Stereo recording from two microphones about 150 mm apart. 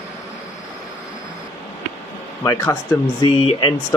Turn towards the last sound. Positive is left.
turn(degrees=35)  # may be behind; listen again after turning